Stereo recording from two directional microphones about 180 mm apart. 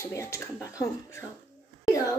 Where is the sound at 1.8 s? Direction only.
15° left (ahead or behind).